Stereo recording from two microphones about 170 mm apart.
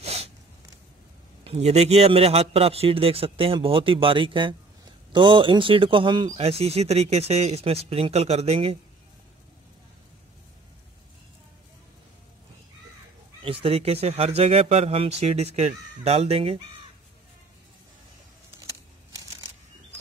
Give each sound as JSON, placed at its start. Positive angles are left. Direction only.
{"t": 0.0, "sound": "a sound", "side_deg": -40}
{"t": 1.4, "sound": "speech", "side_deg": -35}
{"t": 13.4, "sound": "speech", "side_deg": -35}